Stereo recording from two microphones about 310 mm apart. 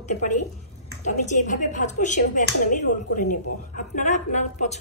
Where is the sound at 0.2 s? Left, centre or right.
Left.